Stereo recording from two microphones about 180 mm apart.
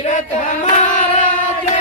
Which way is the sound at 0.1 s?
45° left (ahead or behind).